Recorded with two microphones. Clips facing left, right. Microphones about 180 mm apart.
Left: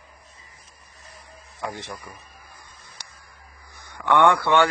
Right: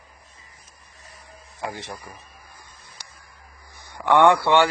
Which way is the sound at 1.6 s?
20° right (ahead or behind).